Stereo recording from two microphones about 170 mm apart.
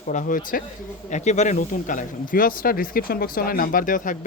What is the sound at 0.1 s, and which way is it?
Speech, 50° left (ahead or behind).